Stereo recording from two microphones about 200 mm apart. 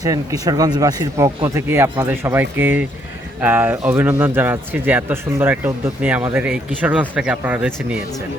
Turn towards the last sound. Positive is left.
turn(degrees=-5)  # may be behind; listen again after turning